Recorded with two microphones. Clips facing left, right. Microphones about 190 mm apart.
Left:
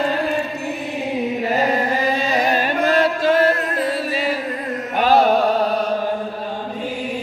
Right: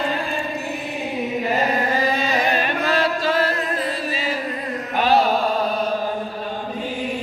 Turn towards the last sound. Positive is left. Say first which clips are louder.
# left 3 dB
turn(degrees=50)  # may be behind; listen again after turning